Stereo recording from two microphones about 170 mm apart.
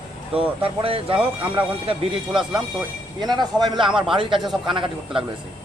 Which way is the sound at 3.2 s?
25° right (ahead or behind).